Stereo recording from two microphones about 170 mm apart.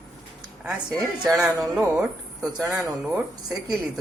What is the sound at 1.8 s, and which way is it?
Speech, 15° right (ahead or behind).